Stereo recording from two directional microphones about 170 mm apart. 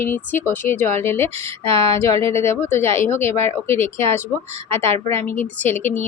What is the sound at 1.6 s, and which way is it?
Speech, 35° right (ahead or behind).